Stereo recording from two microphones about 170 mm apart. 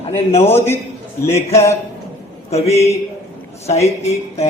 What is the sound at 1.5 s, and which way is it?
A man's voice, 15° left (ahead or behind).